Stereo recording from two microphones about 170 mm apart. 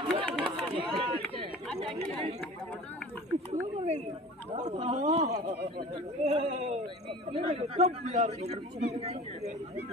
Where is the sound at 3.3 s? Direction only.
40° right (ahead or behind).